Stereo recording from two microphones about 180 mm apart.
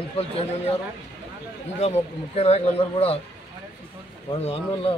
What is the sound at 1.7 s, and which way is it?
Speech, 35° left (ahead or behind).